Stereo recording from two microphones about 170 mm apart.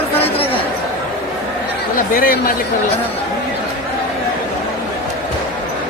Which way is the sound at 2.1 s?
55° left (ahead or behind).